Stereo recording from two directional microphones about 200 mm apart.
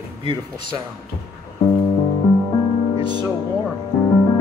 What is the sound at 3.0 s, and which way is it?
Music, 20° right (ahead or behind).